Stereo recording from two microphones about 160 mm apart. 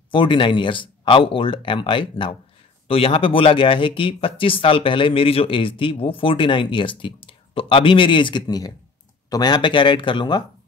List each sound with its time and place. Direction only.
0.1 s speech: 30° left (ahead or behind)